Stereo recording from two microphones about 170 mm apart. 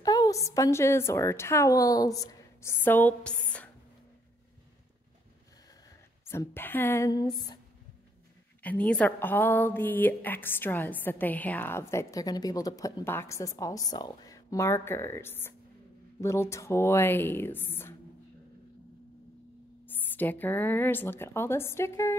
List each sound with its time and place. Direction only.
0.0 s a woman's voice: 20° left (ahead or behind)
6.2 s a woman's voice: 15° left (ahead or behind)
8.6 s a woman's voice: 10° left (ahead or behind)
19.9 s a woman's voice: 10° left (ahead or behind)